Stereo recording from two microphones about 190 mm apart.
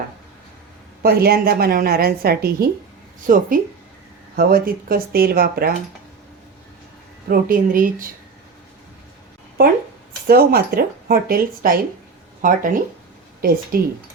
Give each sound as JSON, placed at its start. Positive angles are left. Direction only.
{"t": 1.0, "sound": "a woman's voice", "side_deg": -55}
{"t": 7.3, "sound": "a woman's voice", "side_deg": -50}
{"t": 10.2, "sound": "a woman's voice", "side_deg": -50}